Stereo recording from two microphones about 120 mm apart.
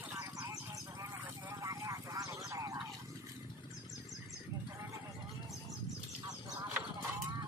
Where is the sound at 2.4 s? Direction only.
25° right (ahead or behind).